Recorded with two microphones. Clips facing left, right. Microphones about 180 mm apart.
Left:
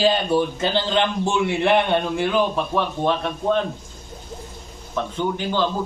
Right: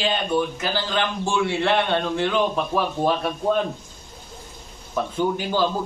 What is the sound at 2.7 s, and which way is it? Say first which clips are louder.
Speech: even; 5° right (ahead or behind).